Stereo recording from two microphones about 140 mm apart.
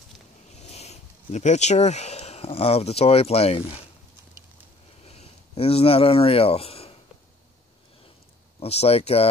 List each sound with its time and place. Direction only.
0.6 s speech: 50° left (ahead or behind)
5.0 s a sound: 45° left (ahead or behind)
8.5 s speech: 45° left (ahead or behind)